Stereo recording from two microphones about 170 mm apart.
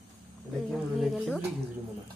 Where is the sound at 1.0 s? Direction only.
Centre (ahead or behind).